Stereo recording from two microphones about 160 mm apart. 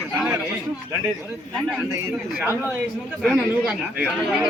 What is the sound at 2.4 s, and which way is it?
Speech, 10° right (ahead or behind).